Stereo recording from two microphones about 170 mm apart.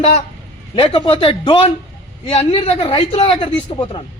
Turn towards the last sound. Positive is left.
turn(degrees=30)  # may be behind; listen again after turning